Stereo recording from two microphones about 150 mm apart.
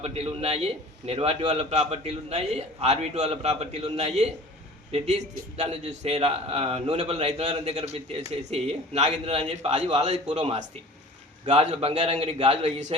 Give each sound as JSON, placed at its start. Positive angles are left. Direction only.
{"t": 0.0, "sound": "a man's voice", "side_deg": -45}